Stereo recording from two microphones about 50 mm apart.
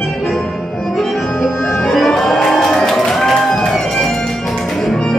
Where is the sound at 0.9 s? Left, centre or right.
Centre.